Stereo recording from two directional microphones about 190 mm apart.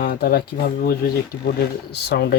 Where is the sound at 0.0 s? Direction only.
50° left (ahead or behind).